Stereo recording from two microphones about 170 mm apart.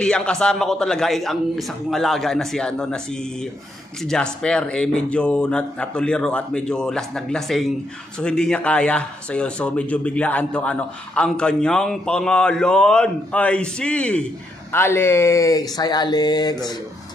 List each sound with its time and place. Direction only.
0.0 s speech: 5° left (ahead or behind); by 16.5 s 25° left (ahead or behind)